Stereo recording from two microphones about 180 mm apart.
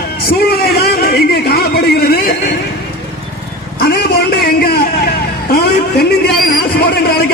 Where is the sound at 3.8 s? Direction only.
55° left (ahead or behind).